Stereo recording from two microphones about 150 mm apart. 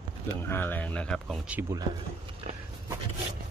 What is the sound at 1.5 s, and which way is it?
Speech, 15° right (ahead or behind).